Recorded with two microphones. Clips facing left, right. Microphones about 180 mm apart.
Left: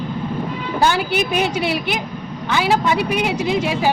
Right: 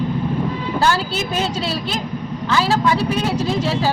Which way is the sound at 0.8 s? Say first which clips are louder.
Left 2 dB; 20° left (ahead or behind).